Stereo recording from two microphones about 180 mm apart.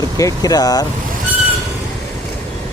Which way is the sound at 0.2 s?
20° left (ahead or behind).